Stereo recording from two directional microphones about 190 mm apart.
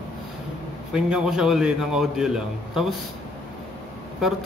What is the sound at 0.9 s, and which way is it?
Speech, 5° right (ahead or behind).